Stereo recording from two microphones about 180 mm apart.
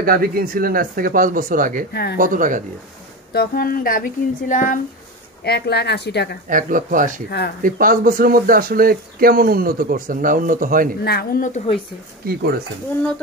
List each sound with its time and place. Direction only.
0.0 s speech: 55° right (ahead or behind)
3.3 s a sound: 55° left (ahead or behind)
5.4 s speech: 65° left (ahead or behind)
6.5 s speech: 50° right (ahead or behind)
7.2 s speech: 65° left (ahead or behind)
7.6 s speech: 50° right (ahead or behind)
11.1 s a sound: 55° left (ahead or behind); by 11.8 s 35° left (ahead or behind)
12.3 s speech: 60° right (ahead or behind)